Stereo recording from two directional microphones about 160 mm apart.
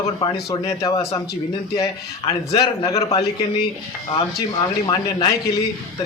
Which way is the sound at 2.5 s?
20° left (ahead or behind).